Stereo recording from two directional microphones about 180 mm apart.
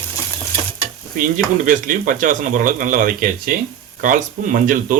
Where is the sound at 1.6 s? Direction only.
45° right (ahead or behind).